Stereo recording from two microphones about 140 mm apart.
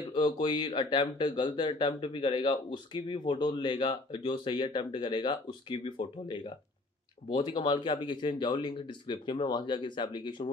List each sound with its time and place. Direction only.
0.1 s speech: 35° left (ahead or behind)